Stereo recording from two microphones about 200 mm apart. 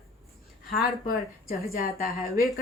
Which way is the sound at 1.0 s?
45° left (ahead or behind).